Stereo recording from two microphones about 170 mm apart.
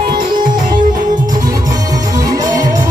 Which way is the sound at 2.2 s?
20° right (ahead or behind).